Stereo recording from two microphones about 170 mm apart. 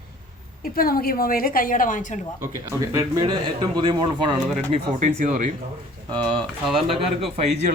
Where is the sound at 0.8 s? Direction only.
60° left (ahead or behind).